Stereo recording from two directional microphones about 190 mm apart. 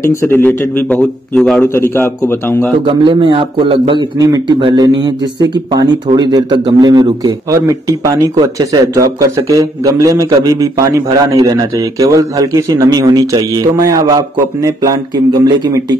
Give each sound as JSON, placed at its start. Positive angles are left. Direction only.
{"t": 0.0, "sound": "a man's voice", "side_deg": 15}
{"t": 2.8, "sound": "a man's voice", "side_deg": -25}